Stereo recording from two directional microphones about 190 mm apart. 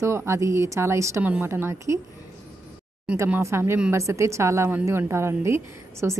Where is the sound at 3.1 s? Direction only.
10° right (ahead or behind).